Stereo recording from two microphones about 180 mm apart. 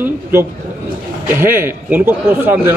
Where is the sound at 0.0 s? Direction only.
10° right (ahead or behind).